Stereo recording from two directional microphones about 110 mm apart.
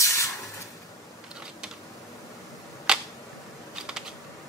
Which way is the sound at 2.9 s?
5° right (ahead or behind).